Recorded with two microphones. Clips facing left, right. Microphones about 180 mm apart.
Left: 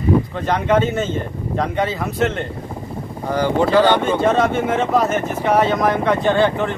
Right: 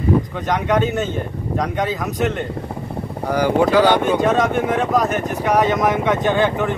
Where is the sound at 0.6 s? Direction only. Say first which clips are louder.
Left 1 dB; centre (ahead or behind).